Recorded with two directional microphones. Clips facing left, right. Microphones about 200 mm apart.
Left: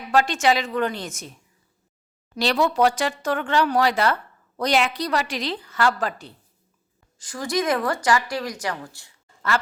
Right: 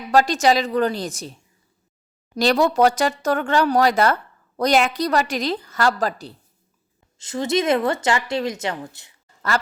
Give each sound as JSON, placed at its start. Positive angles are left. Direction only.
{"t": 0.1, "sound": "a woman's voice", "side_deg": -40}
{"t": 7.2, "sound": "speech", "side_deg": -25}